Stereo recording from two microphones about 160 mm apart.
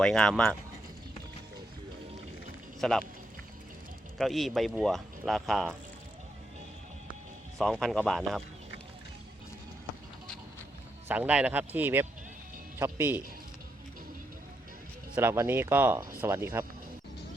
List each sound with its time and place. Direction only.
0.0 s speech: 5° left (ahead or behind)
2.8 s speech: 5° left (ahead or behind)
4.2 s speech: centre (ahead or behind)
7.6 s speech: centre (ahead or behind)
11.1 s speech: 10° right (ahead or behind)
15.1 s speech: 15° right (ahead or behind)